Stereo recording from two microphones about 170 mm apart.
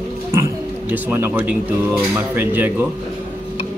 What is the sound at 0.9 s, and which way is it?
Speech, 10° right (ahead or behind).